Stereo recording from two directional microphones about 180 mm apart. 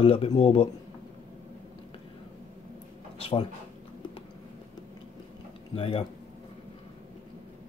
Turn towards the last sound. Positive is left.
turn(degrees=30)  # may be behind; listen again after turning